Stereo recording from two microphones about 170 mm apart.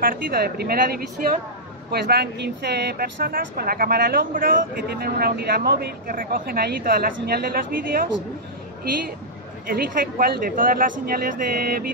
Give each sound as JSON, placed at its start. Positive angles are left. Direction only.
{"t": 0.0, "sound": "speech", "side_deg": -60}
{"t": 1.9, "sound": "speech", "side_deg": -70}
{"t": 9.7, "sound": "speech", "side_deg": -60}